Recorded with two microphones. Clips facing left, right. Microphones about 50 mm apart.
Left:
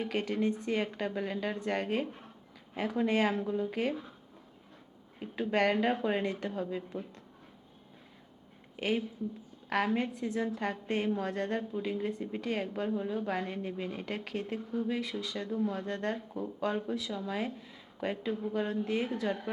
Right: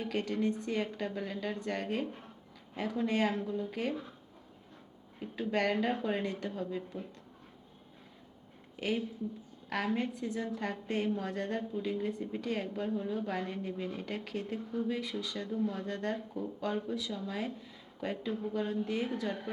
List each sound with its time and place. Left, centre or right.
0.0 s a woman's voice: centre
5.2 s a woman's voice: centre
8.8 s a woman's voice: centre
11.7 s a woman's voice: centre
15.4 s a woman's voice: centre